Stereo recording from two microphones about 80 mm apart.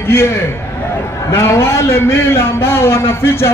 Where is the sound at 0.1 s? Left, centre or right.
Left.